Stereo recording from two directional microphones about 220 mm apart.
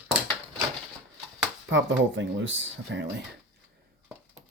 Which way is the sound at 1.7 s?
55° right (ahead or behind).